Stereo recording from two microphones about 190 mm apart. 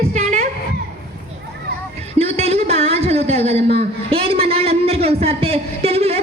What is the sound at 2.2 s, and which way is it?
A man's voice, 35° right (ahead or behind).